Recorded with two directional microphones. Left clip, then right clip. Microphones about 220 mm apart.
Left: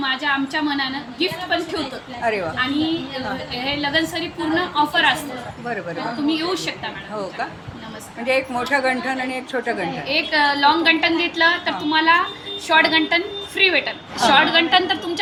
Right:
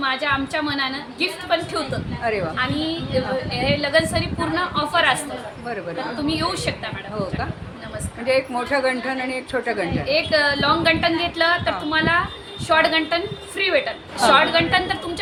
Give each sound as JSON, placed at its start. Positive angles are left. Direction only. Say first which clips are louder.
{"t": 0.0, "sound": "a woman's voice", "louder": "even", "side_deg": -10}
{"t": 3.8, "sound": "a woman's voice", "louder": "even", "side_deg": -10}
{"t": 6.2, "sound": "a woman's voice", "louder": "left 1 dB", "side_deg": -10}
{"t": 8.2, "sound": "a woman's voice", "louder": "even", "side_deg": -5}